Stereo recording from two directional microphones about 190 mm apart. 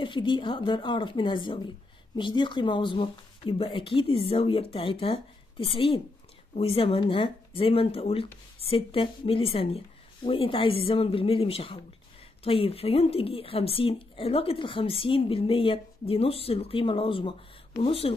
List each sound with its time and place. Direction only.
0.0 s a woman's voice: 25° left (ahead or behind)